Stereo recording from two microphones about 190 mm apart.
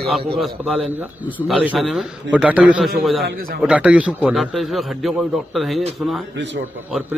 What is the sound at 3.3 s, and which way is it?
Speech, 50° right (ahead or behind).